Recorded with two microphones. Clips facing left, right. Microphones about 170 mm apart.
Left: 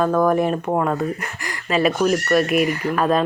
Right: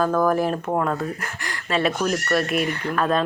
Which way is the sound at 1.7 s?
5° left (ahead or behind).